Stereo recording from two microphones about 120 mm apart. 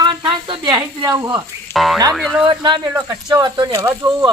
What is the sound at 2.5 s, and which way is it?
Speech, 40° right (ahead or behind).